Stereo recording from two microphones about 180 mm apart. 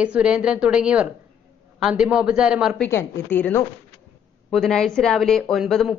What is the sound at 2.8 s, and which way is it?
A woman's voice, 10° left (ahead or behind).